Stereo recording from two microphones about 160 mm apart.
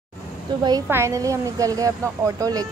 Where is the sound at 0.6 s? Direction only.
25° right (ahead or behind).